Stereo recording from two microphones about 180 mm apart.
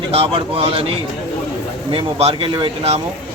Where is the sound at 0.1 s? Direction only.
30° right (ahead or behind).